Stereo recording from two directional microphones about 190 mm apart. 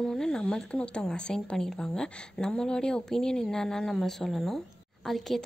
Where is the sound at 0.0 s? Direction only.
5° left (ahead or behind).